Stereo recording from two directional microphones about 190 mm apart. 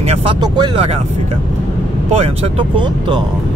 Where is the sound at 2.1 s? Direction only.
30° right (ahead or behind).